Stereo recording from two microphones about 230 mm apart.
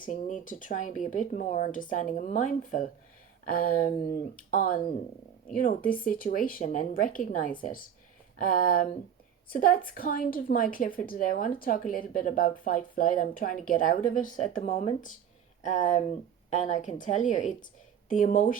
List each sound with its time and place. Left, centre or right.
0.0 s a woman's voice: left
6.1 s a woman's voice: left